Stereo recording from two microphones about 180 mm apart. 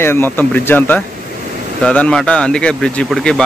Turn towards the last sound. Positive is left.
turn(degrees=5)  # may be behind; listen again after turning